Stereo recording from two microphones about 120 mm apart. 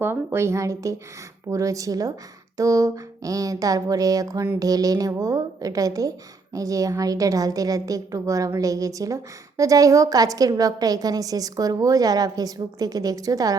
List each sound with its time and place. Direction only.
0.0 s a woman's voice: 20° right (ahead or behind)